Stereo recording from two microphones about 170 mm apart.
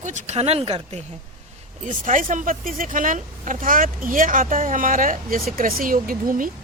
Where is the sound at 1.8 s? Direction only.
50° right (ahead or behind).